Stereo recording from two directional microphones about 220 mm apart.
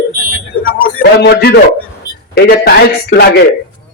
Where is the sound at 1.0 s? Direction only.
50° left (ahead or behind).